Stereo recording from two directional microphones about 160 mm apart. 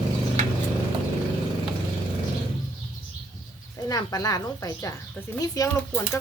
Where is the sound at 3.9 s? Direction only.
25° left (ahead or behind).